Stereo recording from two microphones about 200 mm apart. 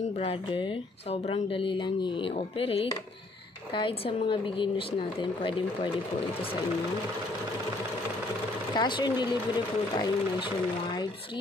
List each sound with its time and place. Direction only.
0.2 s speech: 25° left (ahead or behind)
8.7 s speech: 20° left (ahead or behind)